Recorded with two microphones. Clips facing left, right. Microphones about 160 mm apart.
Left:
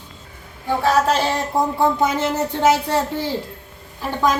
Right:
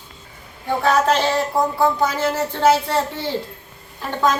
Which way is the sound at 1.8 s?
20° left (ahead or behind).